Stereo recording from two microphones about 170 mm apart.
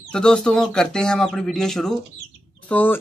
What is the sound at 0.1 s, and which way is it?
Speech, 5° left (ahead or behind).